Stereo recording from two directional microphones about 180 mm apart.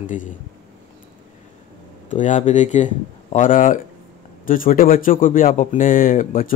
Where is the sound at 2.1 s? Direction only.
45° left (ahead or behind).